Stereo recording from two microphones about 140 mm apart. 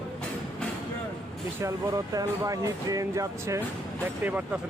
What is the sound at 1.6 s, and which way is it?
Speech, 25° right (ahead or behind).